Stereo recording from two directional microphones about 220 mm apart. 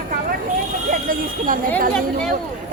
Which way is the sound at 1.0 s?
40° right (ahead or behind).